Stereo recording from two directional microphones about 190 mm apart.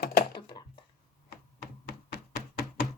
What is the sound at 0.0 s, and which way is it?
Typing, 55° left (ahead or behind).